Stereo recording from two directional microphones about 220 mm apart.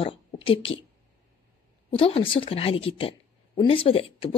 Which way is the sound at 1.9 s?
25° left (ahead or behind).